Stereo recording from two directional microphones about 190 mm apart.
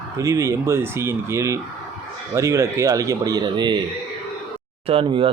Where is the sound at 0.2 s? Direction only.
15° right (ahead or behind).